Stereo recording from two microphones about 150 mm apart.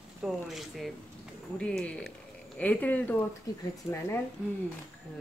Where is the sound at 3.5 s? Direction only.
25° left (ahead or behind).